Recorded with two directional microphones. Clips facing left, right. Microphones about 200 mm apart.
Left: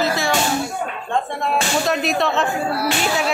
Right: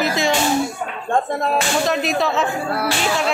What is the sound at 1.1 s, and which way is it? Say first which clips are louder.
Speech: right 3 dB; 40° right (ahead or behind).